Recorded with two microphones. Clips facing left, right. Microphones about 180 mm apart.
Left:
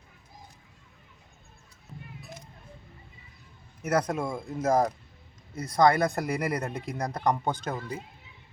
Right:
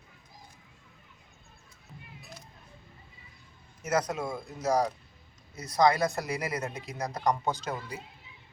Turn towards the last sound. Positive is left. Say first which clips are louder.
# left 2 dB
turn(degrees=55)  # may be behind; listen again after turning